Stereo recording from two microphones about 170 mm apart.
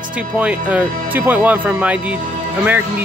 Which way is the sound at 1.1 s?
10° right (ahead or behind).